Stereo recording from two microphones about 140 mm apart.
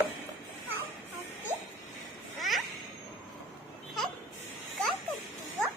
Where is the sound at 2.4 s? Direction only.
Centre (ahead or behind).